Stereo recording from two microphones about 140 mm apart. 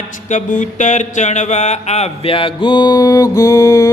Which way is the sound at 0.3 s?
60° left (ahead or behind).